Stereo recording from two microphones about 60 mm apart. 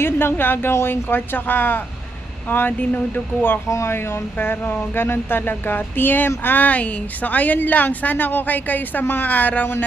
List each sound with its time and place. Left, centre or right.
0.0 s speech: left
3.6 s speech: left
3.9 s speech: left